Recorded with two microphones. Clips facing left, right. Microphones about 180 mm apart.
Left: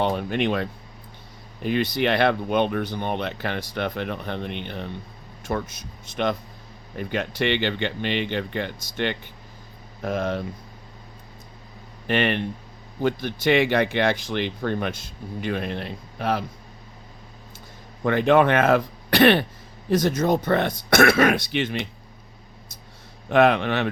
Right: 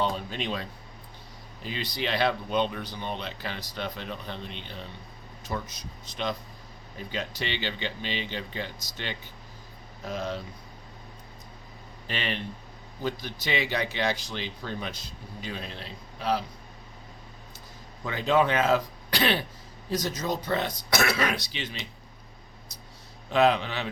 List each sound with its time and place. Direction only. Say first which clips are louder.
0.0 s speech: left 7 dB; 65° left (ahead or behind)
6.9 s speech: left 7 dB; 60° left (ahead or behind)
12.0 s speech: left 10 dB; 60° left (ahead or behind)
18.0 s speech: left 7 dB; 60° left (ahead or behind)
23.3 s speech: left 5 dB; 55° left (ahead or behind)